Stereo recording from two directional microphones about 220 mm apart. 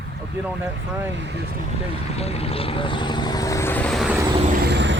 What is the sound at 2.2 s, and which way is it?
Speech, 25° left (ahead or behind).